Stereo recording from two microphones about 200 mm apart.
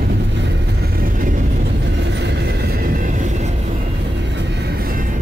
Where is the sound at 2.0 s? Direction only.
60° right (ahead or behind); by 3.5 s 35° right (ahead or behind).